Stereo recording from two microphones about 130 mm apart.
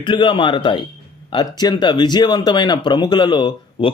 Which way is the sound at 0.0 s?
40° left (ahead or behind).